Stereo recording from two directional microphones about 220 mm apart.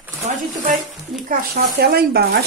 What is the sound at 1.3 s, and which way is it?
Speech, 45° right (ahead or behind).